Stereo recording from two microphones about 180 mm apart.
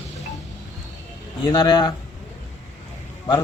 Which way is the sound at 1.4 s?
25° left (ahead or behind).